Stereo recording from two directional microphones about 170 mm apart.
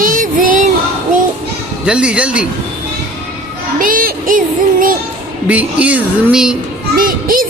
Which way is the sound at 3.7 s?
55° right (ahead or behind).